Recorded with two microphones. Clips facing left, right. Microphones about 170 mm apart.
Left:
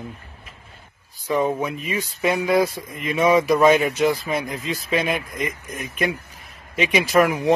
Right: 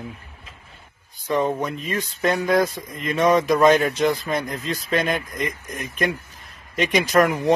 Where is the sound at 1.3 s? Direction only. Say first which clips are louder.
Left 1 dB; 5° left (ahead or behind).